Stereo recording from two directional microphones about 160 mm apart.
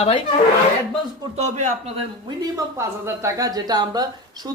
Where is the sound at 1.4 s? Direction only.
45° right (ahead or behind).